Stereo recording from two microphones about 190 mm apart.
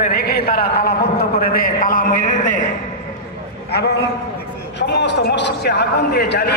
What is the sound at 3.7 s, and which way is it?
A man's voice, 60° left (ahead or behind).